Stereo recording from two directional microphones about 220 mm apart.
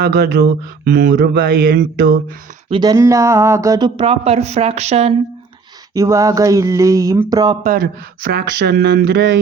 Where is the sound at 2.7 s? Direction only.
20° right (ahead or behind).